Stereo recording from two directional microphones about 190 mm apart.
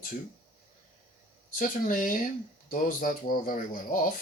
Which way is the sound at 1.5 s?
45° left (ahead or behind).